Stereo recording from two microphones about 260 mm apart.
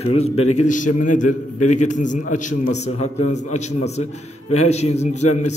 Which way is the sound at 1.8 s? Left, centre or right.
Left.